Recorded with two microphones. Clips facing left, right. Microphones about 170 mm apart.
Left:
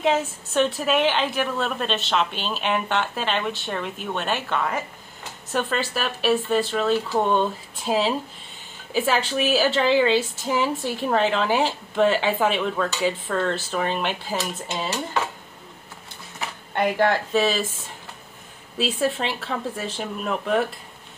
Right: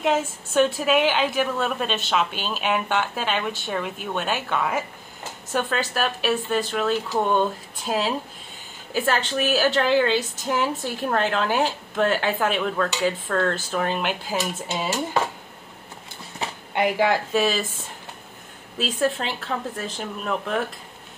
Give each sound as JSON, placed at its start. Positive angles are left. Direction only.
{"t": 0.0, "sound": "a woman's voice", "side_deg": 0}
{"t": 16.4, "sound": "a sound", "side_deg": -30}
{"t": 16.7, "sound": "a woman's voice", "side_deg": -5}
{"t": 18.8, "sound": "a woman's voice", "side_deg": 5}